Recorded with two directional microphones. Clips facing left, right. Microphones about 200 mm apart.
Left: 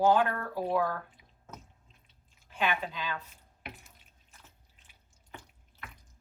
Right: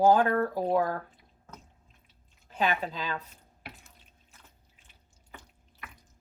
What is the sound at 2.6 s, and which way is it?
Speech, 40° right (ahead or behind).